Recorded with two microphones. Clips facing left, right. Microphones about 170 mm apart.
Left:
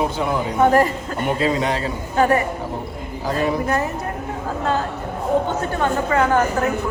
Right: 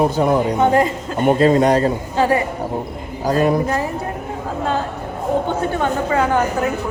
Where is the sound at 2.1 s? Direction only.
25° right (ahead or behind).